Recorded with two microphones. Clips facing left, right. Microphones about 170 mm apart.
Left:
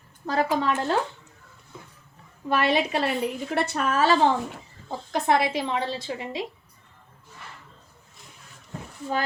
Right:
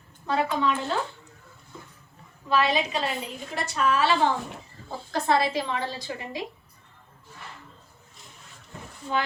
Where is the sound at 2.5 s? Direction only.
55° left (ahead or behind).